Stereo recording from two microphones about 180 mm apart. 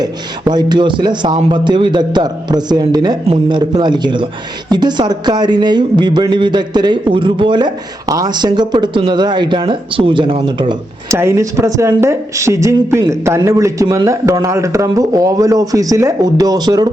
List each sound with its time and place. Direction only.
0.0 s speech: 20° right (ahead or behind)
11.1 s speech: 15° right (ahead or behind)